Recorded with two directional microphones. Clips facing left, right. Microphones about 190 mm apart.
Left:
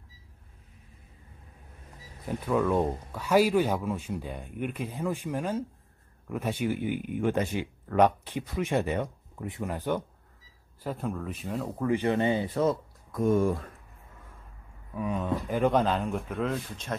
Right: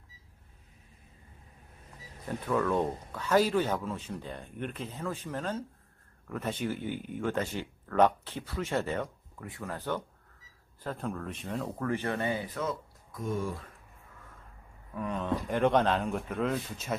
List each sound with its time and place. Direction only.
2.2 s speech: 10° left (ahead or behind); by 12.7 s 30° left (ahead or behind)
13.1 s speech: 55° left (ahead or behind)
15.0 s speech: 5° left (ahead or behind)